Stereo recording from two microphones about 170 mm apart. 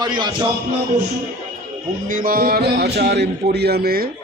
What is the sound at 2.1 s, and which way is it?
A man's voice, 55° right (ahead or behind).